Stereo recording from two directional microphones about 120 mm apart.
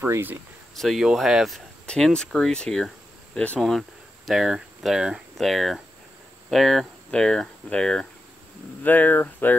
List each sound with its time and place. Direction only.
0.0 s speech: 15° right (ahead or behind)
0.7 s speech: centre (ahead or behind); by 9.6 s 15° left (ahead or behind)